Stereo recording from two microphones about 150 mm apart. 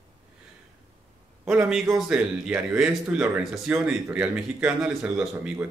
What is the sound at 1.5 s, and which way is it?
A man's voice, 5° right (ahead or behind).